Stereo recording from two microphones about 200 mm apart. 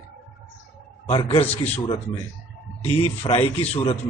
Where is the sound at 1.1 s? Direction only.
25° left (ahead or behind).